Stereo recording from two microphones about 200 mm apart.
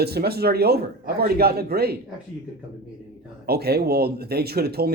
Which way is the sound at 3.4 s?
50° right (ahead or behind).